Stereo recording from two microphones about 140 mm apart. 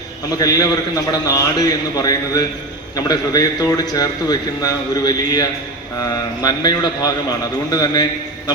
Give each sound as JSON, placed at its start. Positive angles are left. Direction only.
{"t": 0.3, "sound": "a man's voice", "side_deg": 25}